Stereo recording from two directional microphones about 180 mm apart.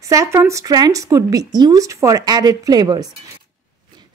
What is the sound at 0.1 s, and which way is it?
Speech, 15° right (ahead or behind).